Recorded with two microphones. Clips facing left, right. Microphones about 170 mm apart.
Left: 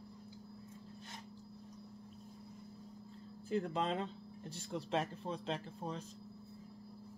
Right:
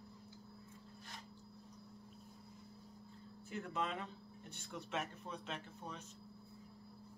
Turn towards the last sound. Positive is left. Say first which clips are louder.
# left 6 dB
turn(degrees=30)  # may be behind; listen again after turning